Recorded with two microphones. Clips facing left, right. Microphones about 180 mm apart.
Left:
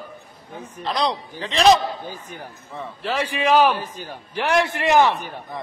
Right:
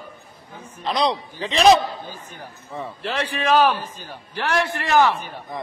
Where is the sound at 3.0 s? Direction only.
10° left (ahead or behind).